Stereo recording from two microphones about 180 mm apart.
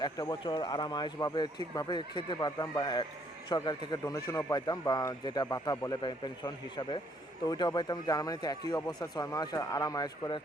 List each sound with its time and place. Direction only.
0.0 s speech: 25° left (ahead or behind)